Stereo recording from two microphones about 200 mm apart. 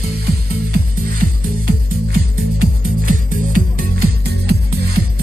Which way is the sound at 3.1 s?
45° right (ahead or behind).